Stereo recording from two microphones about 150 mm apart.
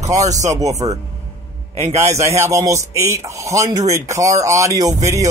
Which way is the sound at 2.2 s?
20° right (ahead or behind).